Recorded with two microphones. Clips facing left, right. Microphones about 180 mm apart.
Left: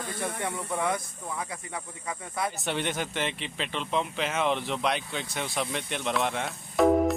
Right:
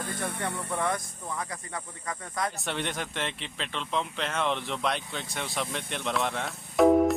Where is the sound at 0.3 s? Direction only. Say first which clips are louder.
Left 1 dB; 65° left (ahead or behind).